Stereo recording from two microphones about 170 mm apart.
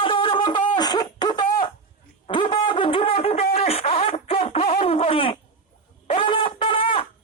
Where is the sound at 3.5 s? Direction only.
35° left (ahead or behind).